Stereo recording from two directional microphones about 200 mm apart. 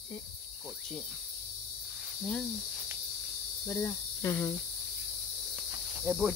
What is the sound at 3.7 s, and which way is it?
Cricket, 10° left (ahead or behind).